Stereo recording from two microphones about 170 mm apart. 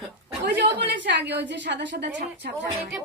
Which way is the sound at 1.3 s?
90° right.